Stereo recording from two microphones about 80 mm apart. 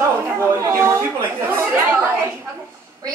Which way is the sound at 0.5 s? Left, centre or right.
Right.